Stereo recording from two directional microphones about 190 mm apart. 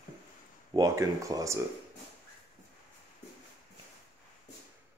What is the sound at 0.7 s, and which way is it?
Speech, 15° right (ahead or behind).